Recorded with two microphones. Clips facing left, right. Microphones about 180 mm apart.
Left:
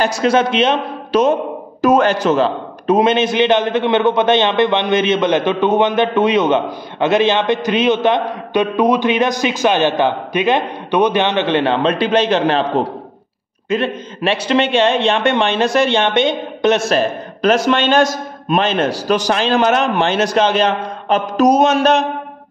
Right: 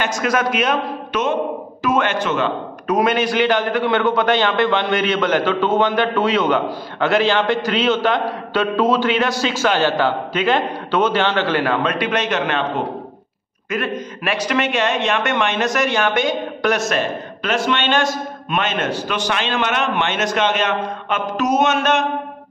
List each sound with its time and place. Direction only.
0.0 s a man's voice: 30° left (ahead or behind)